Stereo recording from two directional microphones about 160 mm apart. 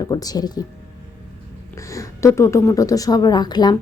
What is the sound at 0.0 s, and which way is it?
Speech, 25° left (ahead or behind).